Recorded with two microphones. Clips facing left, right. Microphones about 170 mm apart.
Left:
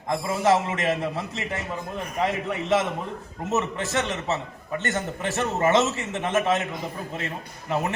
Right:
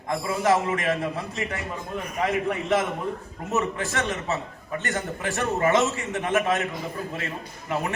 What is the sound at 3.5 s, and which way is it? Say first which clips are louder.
A man's voice: left 1 dB; 20° left (ahead or behind).